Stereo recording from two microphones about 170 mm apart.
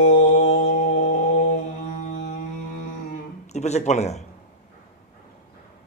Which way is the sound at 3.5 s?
40° left (ahead or behind).